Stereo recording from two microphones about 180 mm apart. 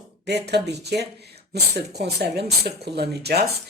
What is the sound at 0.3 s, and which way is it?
Speech, 65° right (ahead or behind).